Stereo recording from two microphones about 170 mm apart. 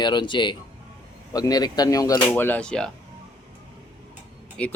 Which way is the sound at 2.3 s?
10° left (ahead or behind).